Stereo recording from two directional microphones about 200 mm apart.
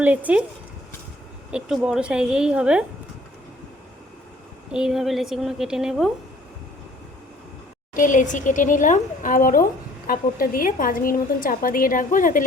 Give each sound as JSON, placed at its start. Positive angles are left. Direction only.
{"t": 0.0, "sound": "speech", "side_deg": -10}
{"t": 1.5, "sound": "a woman's voice", "side_deg": -5}
{"t": 4.7, "sound": "a woman's voice", "side_deg": -5}
{"t": 7.9, "sound": "a woman's voice", "side_deg": 40}